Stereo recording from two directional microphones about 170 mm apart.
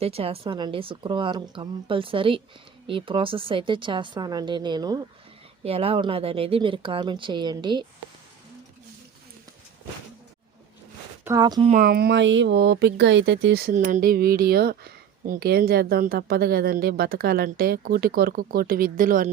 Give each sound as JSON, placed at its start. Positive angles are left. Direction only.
{"t": 0.0, "sound": "a woman's voice", "side_deg": -35}
{"t": 5.6, "sound": "a woman's voice", "side_deg": -35}
{"t": 11.3, "sound": "speech", "side_deg": -25}
{"t": 11.7, "sound": "speech", "side_deg": -55}
{"t": 13.7, "sound": "speech", "side_deg": -50}